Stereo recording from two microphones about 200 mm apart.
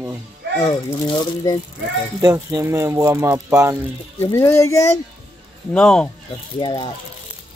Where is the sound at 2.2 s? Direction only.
15° right (ahead or behind).